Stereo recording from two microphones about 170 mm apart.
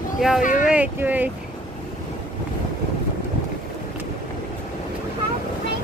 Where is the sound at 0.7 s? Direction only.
10° right (ahead or behind).